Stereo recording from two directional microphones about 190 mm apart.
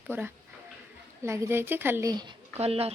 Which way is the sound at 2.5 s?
30° right (ahead or behind).